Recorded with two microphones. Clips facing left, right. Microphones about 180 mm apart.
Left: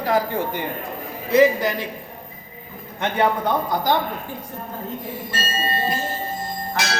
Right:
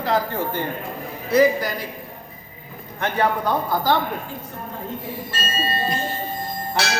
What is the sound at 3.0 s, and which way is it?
Speech, 20° left (ahead or behind).